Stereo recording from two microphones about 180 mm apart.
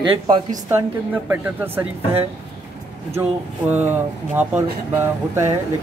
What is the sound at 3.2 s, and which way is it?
Speech, 10° right (ahead or behind).